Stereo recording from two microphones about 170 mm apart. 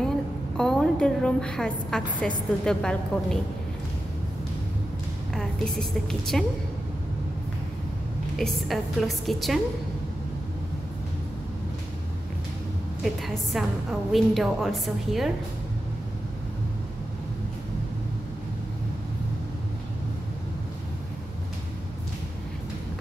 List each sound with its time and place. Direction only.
0.6 s a woman's voice: 5° left (ahead or behind)
5.3 s a woman's voice: 5° left (ahead or behind)
8.4 s a woman's voice: centre (ahead or behind)
13.0 s a woman's voice: centre (ahead or behind)